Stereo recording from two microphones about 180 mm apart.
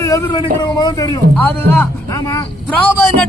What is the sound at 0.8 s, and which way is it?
A man's voice, 20° left (ahead or behind).